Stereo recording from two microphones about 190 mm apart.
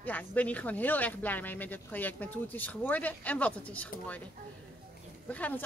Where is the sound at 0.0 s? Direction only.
10° left (ahead or behind).